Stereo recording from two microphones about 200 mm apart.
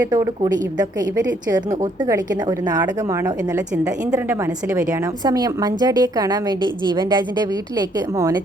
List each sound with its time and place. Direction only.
0.0 s a woman's voice: 15° right (ahead or behind)